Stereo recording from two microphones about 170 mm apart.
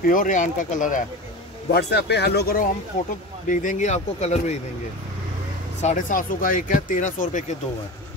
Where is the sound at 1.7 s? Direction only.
75° left (ahead or behind).